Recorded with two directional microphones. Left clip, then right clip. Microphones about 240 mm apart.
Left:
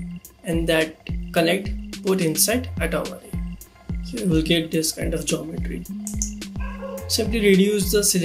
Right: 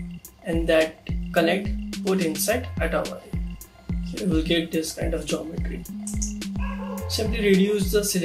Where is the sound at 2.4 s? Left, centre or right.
Left.